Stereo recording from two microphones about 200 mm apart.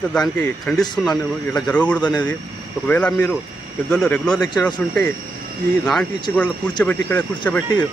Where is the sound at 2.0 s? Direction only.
20° left (ahead or behind).